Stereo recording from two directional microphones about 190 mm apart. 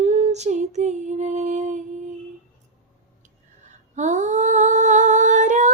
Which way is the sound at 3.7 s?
40° right (ahead or behind).